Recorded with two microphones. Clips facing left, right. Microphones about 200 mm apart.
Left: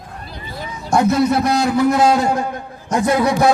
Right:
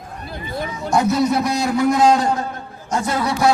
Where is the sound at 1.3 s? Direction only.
Centre (ahead or behind).